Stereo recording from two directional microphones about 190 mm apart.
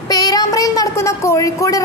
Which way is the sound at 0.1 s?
20° left (ahead or behind).